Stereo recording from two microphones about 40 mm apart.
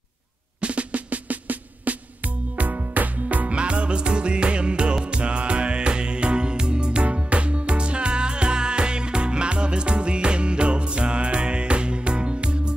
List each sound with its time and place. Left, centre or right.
0.6 s music: right